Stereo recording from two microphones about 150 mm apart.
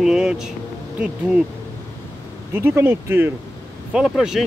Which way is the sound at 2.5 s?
15° right (ahead or behind).